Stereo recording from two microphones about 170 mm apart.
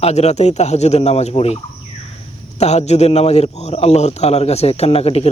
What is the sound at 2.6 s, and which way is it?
A man's voice, 40° left (ahead or behind).